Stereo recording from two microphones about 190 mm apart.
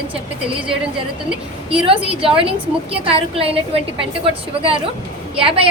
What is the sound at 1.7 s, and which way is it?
A woman's voice, 30° right (ahead or behind).